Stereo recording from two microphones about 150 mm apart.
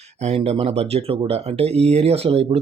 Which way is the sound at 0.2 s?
45° right (ahead or behind).